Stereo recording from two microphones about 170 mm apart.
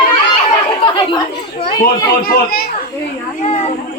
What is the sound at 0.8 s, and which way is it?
Chatter, 30° left (ahead or behind).